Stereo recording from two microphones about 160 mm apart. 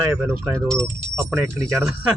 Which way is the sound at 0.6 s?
5° left (ahead or behind).